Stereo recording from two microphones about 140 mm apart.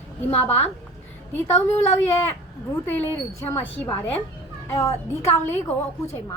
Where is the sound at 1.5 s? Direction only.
15° left (ahead or behind).